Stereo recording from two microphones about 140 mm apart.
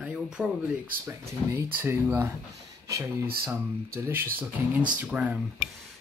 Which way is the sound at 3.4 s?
20° right (ahead or behind).